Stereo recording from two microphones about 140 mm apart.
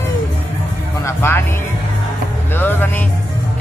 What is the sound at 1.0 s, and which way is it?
Speech, 15° left (ahead or behind).